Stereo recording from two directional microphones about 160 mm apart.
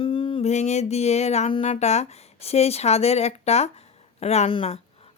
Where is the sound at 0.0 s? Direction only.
35° left (ahead or behind).